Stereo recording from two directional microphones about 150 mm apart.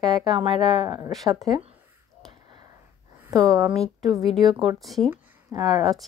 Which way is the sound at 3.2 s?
20° right (ahead or behind).